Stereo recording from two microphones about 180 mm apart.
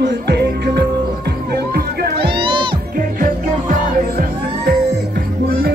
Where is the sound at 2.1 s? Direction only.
30° right (ahead or behind).